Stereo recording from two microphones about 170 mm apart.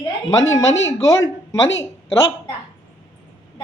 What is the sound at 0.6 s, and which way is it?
Speech, 90° left.